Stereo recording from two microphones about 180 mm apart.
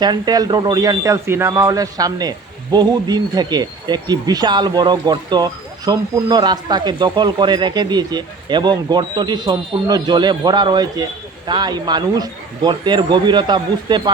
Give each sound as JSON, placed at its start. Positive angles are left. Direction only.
{"t": 0.0, "sound": "speech", "side_deg": -20}